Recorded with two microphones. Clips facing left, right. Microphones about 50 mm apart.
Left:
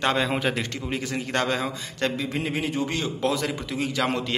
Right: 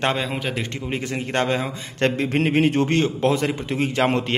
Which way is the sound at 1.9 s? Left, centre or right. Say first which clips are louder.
Right 8 dB; right.